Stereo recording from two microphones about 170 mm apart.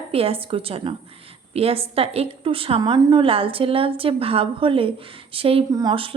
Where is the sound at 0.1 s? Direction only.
35° right (ahead or behind).